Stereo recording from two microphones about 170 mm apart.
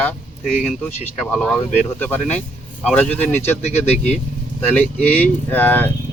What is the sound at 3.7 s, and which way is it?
Speech, 40° left (ahead or behind).